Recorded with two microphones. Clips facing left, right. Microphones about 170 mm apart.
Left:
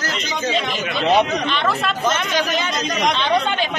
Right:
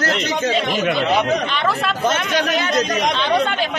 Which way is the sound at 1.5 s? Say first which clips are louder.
Even; 5° right (ahead or behind).